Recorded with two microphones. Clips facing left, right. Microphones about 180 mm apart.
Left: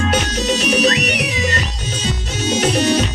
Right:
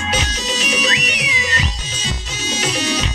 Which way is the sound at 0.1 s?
60° left (ahead or behind).